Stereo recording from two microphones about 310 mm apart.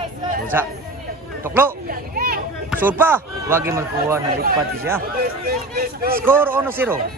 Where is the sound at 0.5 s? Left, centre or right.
Centre.